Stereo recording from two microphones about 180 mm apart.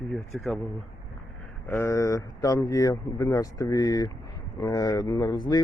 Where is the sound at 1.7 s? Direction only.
15° left (ahead or behind).